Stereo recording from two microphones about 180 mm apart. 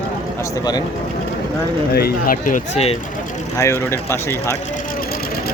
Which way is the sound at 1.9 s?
55° left (ahead or behind).